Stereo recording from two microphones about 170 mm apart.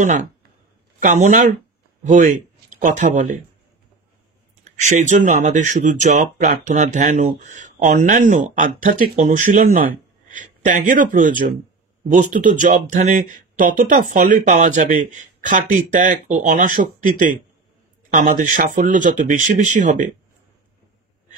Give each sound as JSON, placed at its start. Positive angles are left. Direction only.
{"t": 0.0, "sound": "speech", "side_deg": -45}
{"t": 4.6, "sound": "speech", "side_deg": -45}